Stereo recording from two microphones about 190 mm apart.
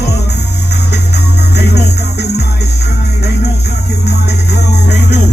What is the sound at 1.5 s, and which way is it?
Music, 60° left (ahead or behind).